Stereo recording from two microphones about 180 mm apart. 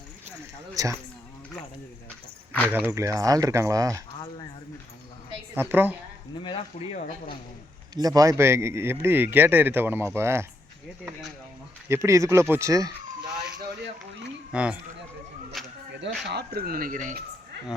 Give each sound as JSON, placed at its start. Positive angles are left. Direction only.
{"t": 0.7, "sound": "speech", "side_deg": -20}
{"t": 2.9, "sound": "speech", "side_deg": -15}
{"t": 5.5, "sound": "speech", "side_deg": -10}
{"t": 6.4, "sound": "speech", "side_deg": 30}
{"t": 7.9, "sound": "speech", "side_deg": -20}
{"t": 11.9, "sound": "speech", "side_deg": -15}
{"t": 14.5, "sound": "speech", "side_deg": -5}
{"t": 15.6, "sound": "a sound", "side_deg": 0}
{"t": 16.2, "sound": "speech", "side_deg": -65}